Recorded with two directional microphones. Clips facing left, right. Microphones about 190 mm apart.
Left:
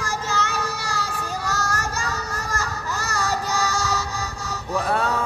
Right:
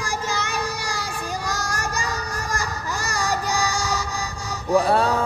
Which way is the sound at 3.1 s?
15° right (ahead or behind).